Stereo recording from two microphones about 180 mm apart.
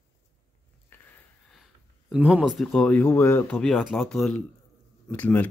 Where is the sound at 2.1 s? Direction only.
5° right (ahead or behind).